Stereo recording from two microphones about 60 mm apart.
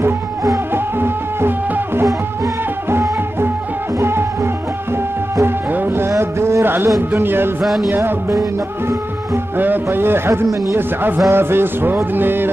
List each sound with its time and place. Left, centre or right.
0.9 s music: right
2.9 s music: right
5.4 s music: right
6.6 s music: right
7.0 s a man's voice: right
7.6 s music: centre
8.0 s music: right
9.6 s a man's voice: right